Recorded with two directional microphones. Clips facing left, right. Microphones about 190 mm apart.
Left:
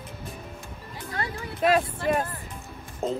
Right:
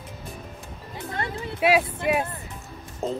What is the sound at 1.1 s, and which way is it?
Music, 25° right (ahead or behind).